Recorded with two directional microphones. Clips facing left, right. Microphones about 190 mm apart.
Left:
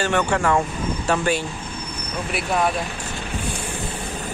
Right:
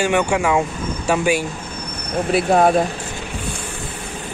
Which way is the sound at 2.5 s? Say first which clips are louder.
Right 7 dB; 55° right (ahead or behind).